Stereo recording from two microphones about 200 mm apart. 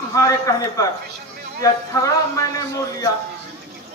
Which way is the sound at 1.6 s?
15° left (ahead or behind).